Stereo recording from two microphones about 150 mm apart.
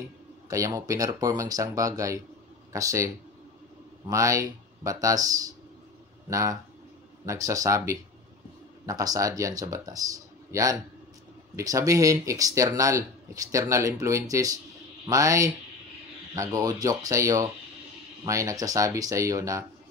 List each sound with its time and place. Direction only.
0.5 s speech: 20° right (ahead or behind)
4.1 s speech: 20° right (ahead or behind)
6.3 s speech: 20° right (ahead or behind)